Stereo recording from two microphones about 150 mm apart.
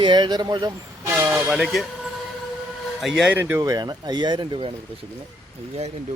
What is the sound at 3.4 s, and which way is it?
Speech, 20° right (ahead or behind).